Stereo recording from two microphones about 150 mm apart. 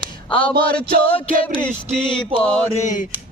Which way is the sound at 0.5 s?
85° right.